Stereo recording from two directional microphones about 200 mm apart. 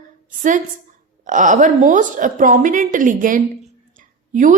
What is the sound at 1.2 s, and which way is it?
A woman's voice, 40° right (ahead or behind).